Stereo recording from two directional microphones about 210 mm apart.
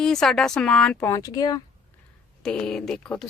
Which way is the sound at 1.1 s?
15° left (ahead or behind).